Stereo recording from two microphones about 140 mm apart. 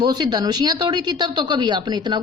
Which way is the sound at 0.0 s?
30° right (ahead or behind).